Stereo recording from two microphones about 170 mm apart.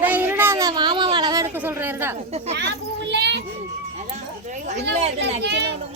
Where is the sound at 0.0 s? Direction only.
10° right (ahead or behind).